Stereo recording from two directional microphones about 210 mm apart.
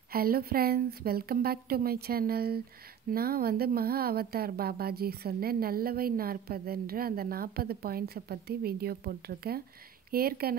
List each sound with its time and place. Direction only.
0.1 s a woman's voice: 45° right (ahead or behind)